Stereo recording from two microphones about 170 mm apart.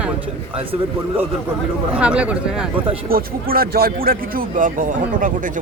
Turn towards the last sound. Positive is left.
turn(degrees=-50)  # may be behind; listen again after turning